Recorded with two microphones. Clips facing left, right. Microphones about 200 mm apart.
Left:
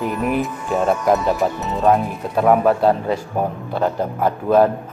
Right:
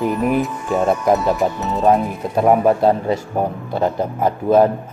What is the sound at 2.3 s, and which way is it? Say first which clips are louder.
Speech: right 1 dB; 15° right (ahead or behind).